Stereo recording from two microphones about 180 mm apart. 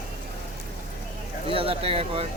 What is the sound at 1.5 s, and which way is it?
Speech, 30° right (ahead or behind).